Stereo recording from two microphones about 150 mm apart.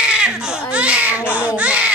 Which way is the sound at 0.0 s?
5° right (ahead or behind).